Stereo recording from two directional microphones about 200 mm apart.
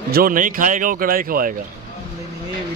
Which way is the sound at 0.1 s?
45° right (ahead or behind).